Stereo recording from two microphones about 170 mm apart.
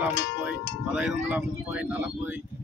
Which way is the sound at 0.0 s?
5° right (ahead or behind).